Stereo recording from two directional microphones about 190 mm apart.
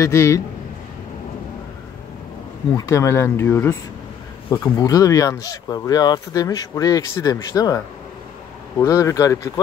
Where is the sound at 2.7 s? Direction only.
15° left (ahead or behind).